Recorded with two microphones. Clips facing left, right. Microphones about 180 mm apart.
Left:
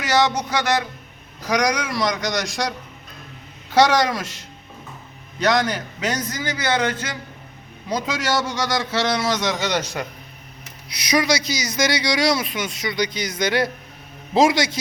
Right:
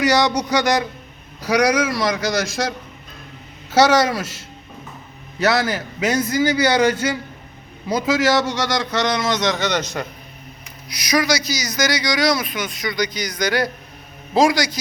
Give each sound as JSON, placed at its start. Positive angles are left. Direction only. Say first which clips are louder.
{"t": 1.5, "sound": "a man's voice", "louder": "right 4 dB", "side_deg": -10}
{"t": 3.8, "sound": "a man's voice", "louder": "right 2 dB", "side_deg": -5}
{"t": 10.8, "sound": "a man's voice", "louder": "right 1 dB", "side_deg": 25}